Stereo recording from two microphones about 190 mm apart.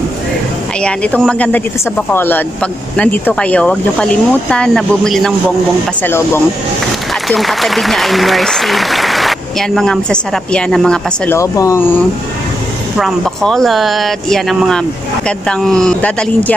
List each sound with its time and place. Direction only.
0.8 s speech: 5° left (ahead or behind)
6.0 s speech: 10° left (ahead or behind)
7.2 s speech: centre (ahead or behind)
11.3 s speech: 15° left (ahead or behind)
13.0 s speech: centre (ahead or behind)